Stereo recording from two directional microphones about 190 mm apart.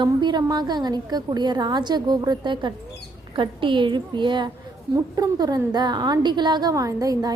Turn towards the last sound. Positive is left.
turn(degrees=-20)  # may be behind; listen again after turning